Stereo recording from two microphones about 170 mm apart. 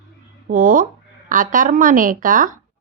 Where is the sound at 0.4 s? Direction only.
55° right (ahead or behind).